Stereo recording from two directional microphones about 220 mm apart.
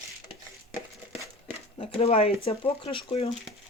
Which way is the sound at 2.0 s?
25° left (ahead or behind).